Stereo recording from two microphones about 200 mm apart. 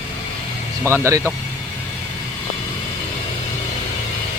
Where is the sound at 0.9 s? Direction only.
15° right (ahead or behind).